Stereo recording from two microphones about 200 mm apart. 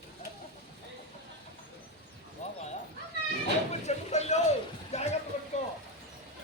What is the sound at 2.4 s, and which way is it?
Bow-wow, 35° left (ahead or behind).